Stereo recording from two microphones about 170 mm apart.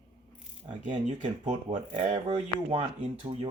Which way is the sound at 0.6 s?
45° right (ahead or behind).